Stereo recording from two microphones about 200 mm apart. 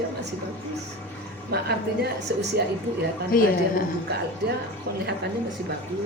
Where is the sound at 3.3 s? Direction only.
45° left (ahead or behind).